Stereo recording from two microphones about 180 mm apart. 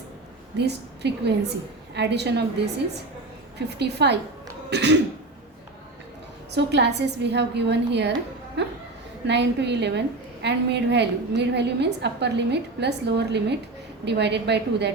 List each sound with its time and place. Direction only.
0.5 s a woman's voice: 70° right (ahead or behind)
3.8 s a woman's voice: 70° right (ahead or behind)
6.5 s a woman's voice: 70° right (ahead or behind)
9.2 s a woman's voice: 75° right (ahead or behind)